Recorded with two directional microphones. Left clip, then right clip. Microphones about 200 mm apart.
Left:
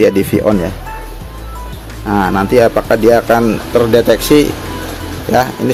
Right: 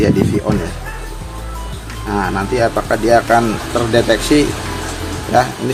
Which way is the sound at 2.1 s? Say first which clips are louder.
Left 5 dB; 45° left (ahead or behind).